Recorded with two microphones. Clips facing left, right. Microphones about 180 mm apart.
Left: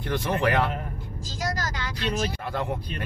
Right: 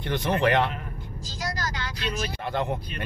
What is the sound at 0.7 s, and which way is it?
Vehicle, 45° left (ahead or behind).